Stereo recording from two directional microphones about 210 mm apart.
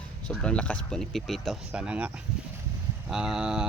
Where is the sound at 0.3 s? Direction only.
5° left (ahead or behind).